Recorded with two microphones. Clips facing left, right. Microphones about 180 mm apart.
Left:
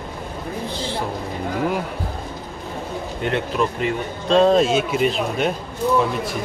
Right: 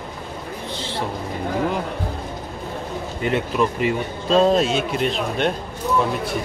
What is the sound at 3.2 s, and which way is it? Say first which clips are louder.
Speech: right 1 dB; centre (ahead or behind).